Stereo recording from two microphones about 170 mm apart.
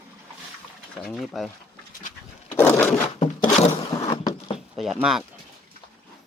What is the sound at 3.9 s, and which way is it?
Power windows, 20° left (ahead or behind).